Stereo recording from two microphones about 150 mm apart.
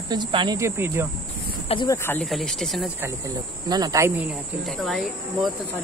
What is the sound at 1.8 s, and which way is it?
Speech, 15° left (ahead or behind).